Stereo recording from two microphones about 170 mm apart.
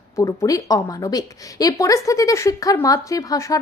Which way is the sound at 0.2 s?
20° left (ahead or behind).